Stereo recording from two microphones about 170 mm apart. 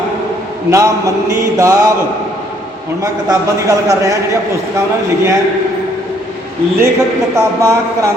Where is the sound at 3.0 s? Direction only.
20° right (ahead or behind).